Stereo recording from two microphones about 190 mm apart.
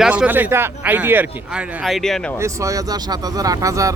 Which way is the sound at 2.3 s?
15° right (ahead or behind).